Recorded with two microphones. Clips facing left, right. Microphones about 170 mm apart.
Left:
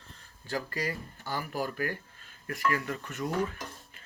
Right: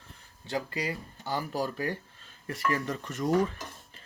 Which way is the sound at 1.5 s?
30° right (ahead or behind).